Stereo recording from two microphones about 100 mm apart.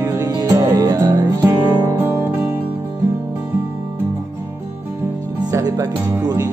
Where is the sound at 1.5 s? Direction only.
25° right (ahead or behind).